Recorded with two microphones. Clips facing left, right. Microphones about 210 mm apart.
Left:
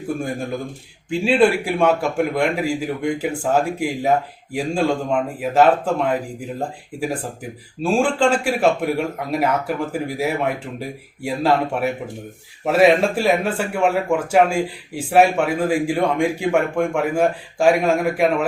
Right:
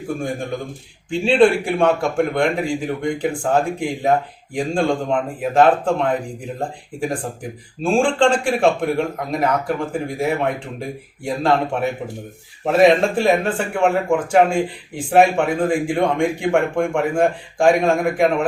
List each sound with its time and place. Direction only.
1.1 s a man's voice: 5° left (ahead or behind)